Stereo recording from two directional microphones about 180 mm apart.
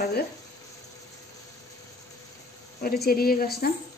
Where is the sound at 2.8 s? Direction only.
55° left (ahead or behind).